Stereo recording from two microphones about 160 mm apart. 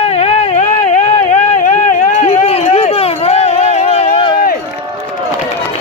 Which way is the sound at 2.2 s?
40° left (ahead or behind).